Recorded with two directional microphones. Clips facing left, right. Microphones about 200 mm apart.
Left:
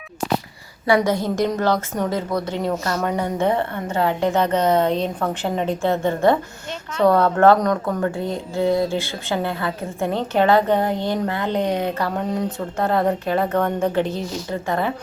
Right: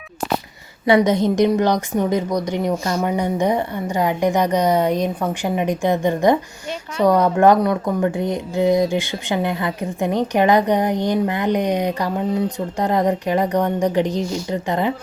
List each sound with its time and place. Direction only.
0.9 s a woman's voice: 20° right (ahead or behind)